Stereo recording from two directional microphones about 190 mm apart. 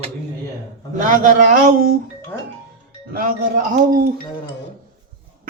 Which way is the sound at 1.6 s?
50° right (ahead or behind).